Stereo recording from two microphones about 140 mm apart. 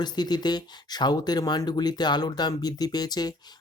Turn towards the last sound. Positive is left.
turn(degrees=30)  # may be behind; listen again after turning